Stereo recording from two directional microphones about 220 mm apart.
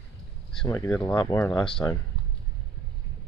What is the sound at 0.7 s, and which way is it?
Speech, 10° left (ahead or behind).